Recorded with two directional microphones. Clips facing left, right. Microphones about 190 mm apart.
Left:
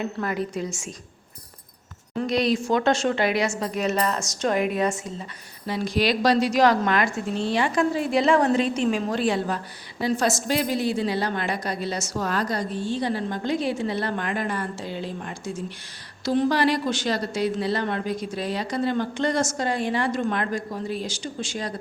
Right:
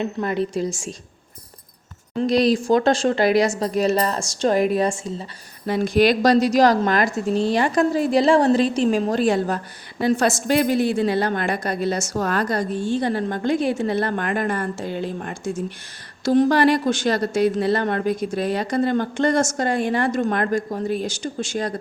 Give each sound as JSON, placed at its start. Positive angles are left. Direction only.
{"t": 0.0, "sound": "a woman's voice", "side_deg": -25}
{"t": 2.2, "sound": "a woman's voice", "side_deg": -35}
{"t": 5.6, "sound": "a woman's voice", "side_deg": -50}
{"t": 10.0, "sound": "a woman's voice", "side_deg": -55}